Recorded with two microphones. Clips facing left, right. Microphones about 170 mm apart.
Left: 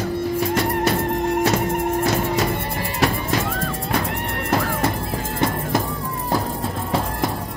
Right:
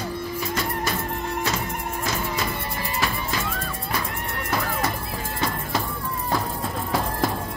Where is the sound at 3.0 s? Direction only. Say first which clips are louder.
Left 7 dB; 70° left (ahead or behind).